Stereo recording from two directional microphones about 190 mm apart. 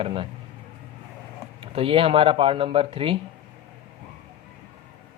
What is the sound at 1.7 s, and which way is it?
Speech, 30° right (ahead or behind).